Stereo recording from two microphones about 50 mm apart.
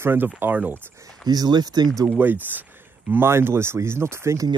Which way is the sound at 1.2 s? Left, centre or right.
Centre.